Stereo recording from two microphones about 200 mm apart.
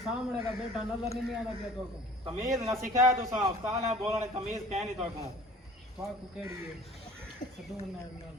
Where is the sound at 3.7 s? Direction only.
30° right (ahead or behind).